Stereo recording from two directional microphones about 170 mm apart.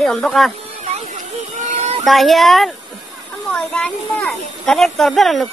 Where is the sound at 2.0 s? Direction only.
Centre (ahead or behind).